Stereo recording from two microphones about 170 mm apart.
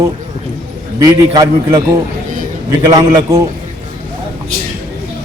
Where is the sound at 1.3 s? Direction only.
20° right (ahead or behind).